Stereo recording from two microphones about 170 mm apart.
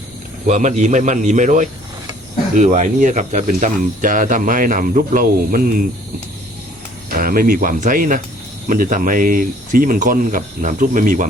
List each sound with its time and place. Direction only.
0.4 s speech: 45° right (ahead or behind)
7.1 s speech: 55° right (ahead or behind)